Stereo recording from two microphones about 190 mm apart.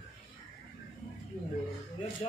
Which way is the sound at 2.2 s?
30° left (ahead or behind).